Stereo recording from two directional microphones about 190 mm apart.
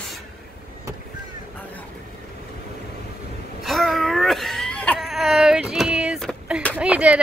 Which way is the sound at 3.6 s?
Centre (ahead or behind).